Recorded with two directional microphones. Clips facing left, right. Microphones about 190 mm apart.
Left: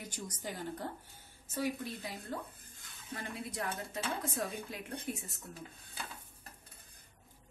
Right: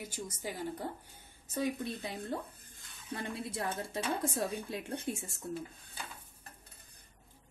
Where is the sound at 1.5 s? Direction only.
20° right (ahead or behind).